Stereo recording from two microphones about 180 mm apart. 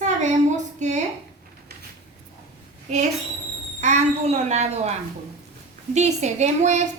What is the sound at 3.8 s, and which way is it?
A child's voice, 40° right (ahead or behind).